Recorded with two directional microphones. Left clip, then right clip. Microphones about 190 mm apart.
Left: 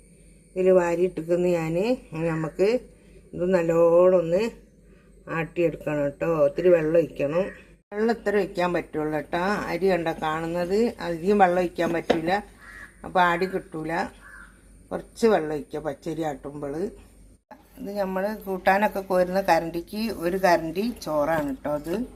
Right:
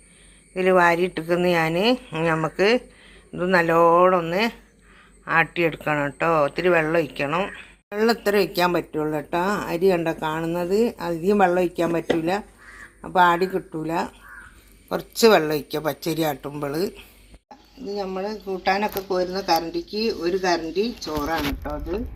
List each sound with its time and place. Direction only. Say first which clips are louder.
0.5 s a woman's voice: right 3 dB; 5° right (ahead or behind)
17.8 s a woman's voice: left 1 dB; 5° left (ahead or behind)
19.0 s speech: left 2 dB; 20° left (ahead or behind)